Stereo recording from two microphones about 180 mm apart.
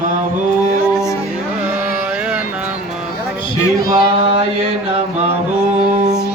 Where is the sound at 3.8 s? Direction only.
55° left (ahead or behind).